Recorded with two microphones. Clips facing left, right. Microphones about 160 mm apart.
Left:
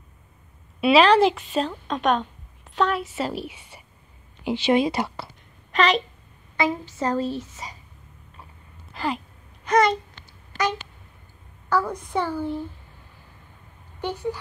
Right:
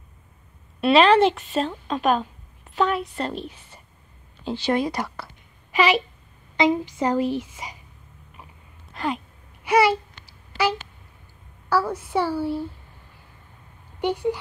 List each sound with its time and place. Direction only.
0.7 s a woman's voice: centre (ahead or behind); by 5.3 s 25° left (ahead or behind)
5.7 s a woman's voice: 5° right (ahead or behind)
8.9 s a sound: centre (ahead or behind)
11.7 s a woman's voice: 5° right (ahead or behind)
14.0 s a woman's voice: 15° right (ahead or behind)